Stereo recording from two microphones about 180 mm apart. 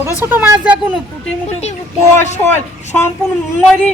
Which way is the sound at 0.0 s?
10° right (ahead or behind).